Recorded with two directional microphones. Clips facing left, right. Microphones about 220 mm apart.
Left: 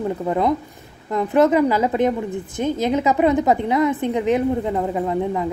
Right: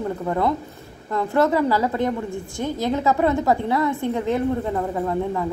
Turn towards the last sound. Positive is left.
turn(degrees=15)  # may be behind; listen again after turning